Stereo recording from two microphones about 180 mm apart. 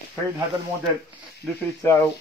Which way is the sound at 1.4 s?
Centre (ahead or behind).